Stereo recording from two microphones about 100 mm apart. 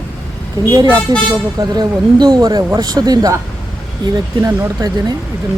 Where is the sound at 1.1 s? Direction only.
45° right (ahead or behind).